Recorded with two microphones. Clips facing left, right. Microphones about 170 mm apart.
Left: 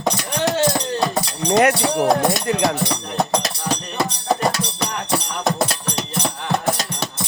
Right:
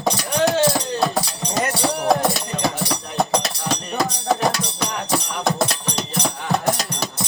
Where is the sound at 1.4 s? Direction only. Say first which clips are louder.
Left 11 dB; 70° left (ahead or behind).